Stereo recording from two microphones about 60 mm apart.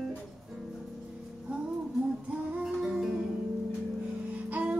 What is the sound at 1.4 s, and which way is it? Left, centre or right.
Music, centre.